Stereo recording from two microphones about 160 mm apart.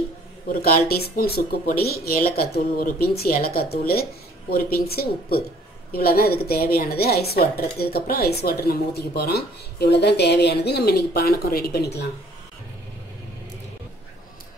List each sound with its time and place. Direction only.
0.5 s speech: 70° left (ahead or behind); by 12.1 s 90° left